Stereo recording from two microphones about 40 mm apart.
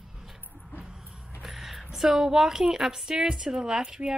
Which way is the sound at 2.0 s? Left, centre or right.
Centre.